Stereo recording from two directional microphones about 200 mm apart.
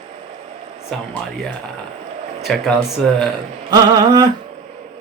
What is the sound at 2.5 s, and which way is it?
Speech, 5° left (ahead or behind).